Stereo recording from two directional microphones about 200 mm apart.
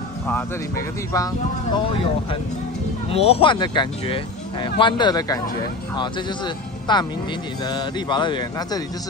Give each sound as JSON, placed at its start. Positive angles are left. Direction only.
{"t": 0.3, "sound": "speech", "side_deg": 15}
{"t": 3.1, "sound": "speech", "side_deg": 30}